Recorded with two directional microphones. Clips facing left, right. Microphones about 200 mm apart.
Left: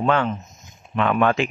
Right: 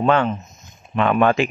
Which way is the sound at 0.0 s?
25° right (ahead or behind).